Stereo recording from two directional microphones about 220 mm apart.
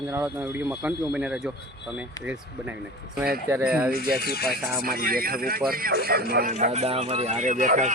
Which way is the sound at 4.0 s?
45° left (ahead or behind).